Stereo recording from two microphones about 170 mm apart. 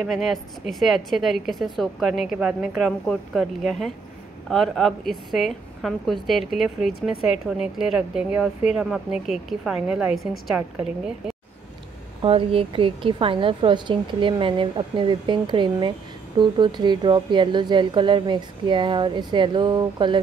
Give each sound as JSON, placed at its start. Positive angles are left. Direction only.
{"t": 0.0, "sound": "speech", "side_deg": 0}
{"t": 12.2, "sound": "speech", "side_deg": -35}